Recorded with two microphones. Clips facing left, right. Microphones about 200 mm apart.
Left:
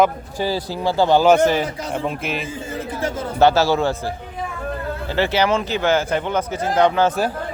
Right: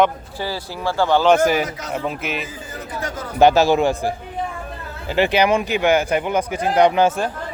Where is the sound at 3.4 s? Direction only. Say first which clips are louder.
Right 2 dB; 15° right (ahead or behind).